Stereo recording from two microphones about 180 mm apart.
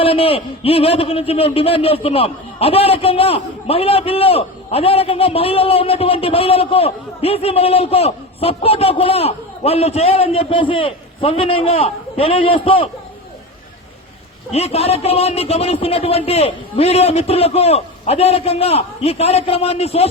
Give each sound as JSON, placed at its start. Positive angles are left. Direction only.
{"t": 0.0, "sound": "a man's voice", "side_deg": 30}
{"t": 14.5, "sound": "a man's voice", "side_deg": 35}